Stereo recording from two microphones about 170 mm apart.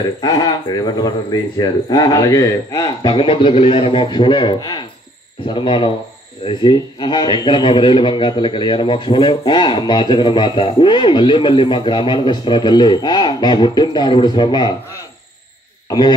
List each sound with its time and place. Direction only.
0.2 s a man's voice: 25° left (ahead or behind)